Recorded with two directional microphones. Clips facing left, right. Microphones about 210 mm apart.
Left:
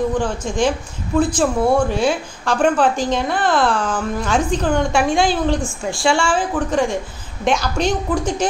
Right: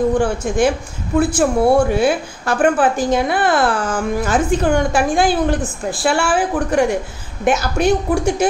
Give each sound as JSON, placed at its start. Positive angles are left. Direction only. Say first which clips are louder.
{"t": 0.2, "sound": "a woman's voice", "louder": "right 3 dB", "side_deg": -10}